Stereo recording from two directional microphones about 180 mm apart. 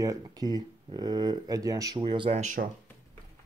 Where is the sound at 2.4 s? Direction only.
45° right (ahead or behind).